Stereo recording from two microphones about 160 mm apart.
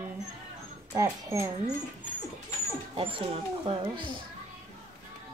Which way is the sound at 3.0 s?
35° right (ahead or behind).